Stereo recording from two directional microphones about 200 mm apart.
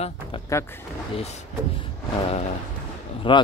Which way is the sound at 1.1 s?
30° left (ahead or behind).